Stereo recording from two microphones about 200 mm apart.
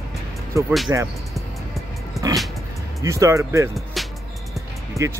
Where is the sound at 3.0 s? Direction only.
15° right (ahead or behind).